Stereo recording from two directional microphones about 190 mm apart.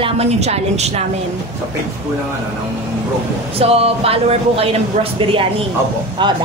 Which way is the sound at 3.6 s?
30° right (ahead or behind).